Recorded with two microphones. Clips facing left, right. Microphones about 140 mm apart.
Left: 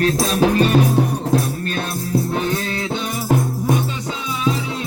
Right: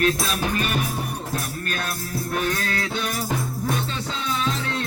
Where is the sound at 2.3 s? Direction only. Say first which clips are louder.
Left 4 dB; 20° left (ahead or behind).